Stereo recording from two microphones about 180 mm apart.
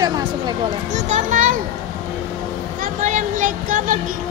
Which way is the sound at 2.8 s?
45° right (ahead or behind).